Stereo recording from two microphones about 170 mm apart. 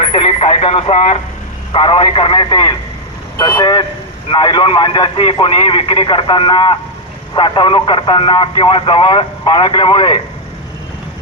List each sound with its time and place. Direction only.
0.0 s speech: 30° left (ahead or behind)